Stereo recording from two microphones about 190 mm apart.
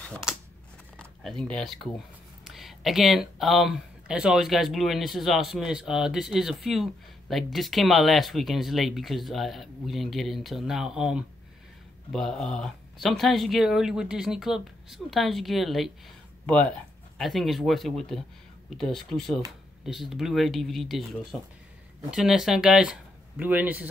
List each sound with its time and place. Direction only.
0.1 s a sound: 5° right (ahead or behind)
1.4 s speech: centre (ahead or behind)
17.2 s speech: centre (ahead or behind)